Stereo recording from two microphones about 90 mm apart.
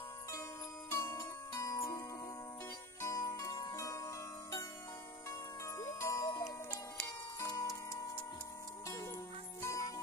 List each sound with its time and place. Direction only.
0.8 s music: 30° left (ahead or behind)
3.2 s zither: 40° left (ahead or behind)
5.8 s music: 35° left (ahead or behind)
7.3 s clock: 40° left (ahead or behind)
9.6 s music: 40° left (ahead or behind)